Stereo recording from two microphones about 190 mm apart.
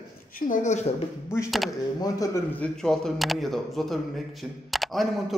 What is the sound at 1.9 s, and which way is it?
Speech, 20° left (ahead or behind).